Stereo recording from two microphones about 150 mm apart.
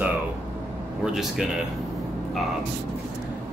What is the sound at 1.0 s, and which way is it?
Speech, centre (ahead or behind).